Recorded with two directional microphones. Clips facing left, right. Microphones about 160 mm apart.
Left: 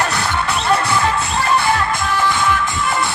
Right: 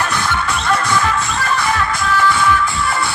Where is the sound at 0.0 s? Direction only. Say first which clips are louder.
Even; 35° left (ahead or behind).